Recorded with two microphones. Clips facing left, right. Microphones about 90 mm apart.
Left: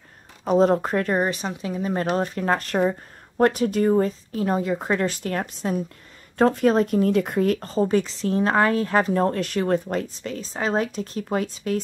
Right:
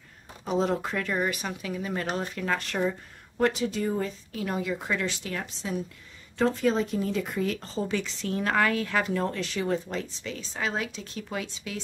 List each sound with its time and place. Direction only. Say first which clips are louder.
0.5 s speech: left 8 dB; 45° left (ahead or behind)